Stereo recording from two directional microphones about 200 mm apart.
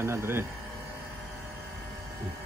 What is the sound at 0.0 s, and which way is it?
Speech, 15° right (ahead or behind).